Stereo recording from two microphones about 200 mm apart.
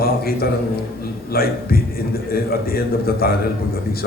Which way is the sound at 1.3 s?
50° left (ahead or behind).